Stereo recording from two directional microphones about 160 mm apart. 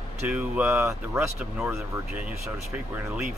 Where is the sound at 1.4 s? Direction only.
5° right (ahead or behind).